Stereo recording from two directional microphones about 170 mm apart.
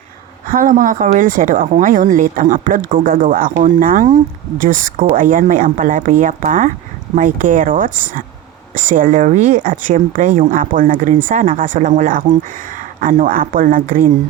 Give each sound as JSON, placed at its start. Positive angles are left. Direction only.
{"t": 0.4, "sound": "speech", "side_deg": -55}